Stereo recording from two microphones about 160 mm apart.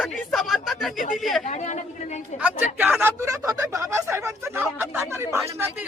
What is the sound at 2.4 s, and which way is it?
A man's voice, 10° right (ahead or behind).